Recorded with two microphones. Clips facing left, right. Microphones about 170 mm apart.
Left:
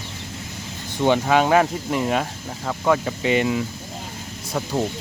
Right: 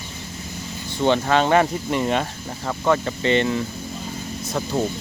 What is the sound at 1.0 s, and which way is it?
Speech, 10° left (ahead or behind).